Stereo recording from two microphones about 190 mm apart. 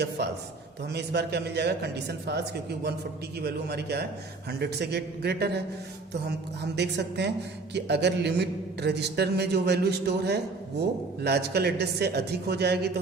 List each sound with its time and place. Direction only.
0.9 s a man's voice: 60° right (ahead or behind)